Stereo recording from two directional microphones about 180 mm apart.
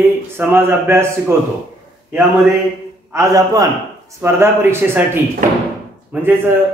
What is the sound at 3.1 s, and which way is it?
A man's voice, 20° right (ahead or behind).